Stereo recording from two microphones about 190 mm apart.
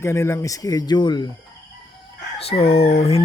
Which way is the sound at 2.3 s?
30° left (ahead or behind).